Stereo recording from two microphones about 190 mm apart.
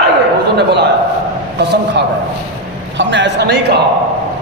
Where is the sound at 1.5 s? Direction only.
65° right (ahead or behind).